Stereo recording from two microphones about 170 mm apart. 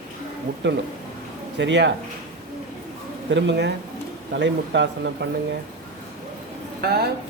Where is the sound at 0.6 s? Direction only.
90° right.